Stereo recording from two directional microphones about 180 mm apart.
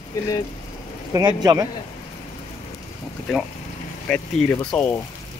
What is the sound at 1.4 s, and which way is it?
Speech, 20° right (ahead or behind).